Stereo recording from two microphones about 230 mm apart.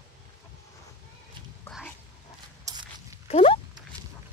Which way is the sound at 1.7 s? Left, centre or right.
Centre.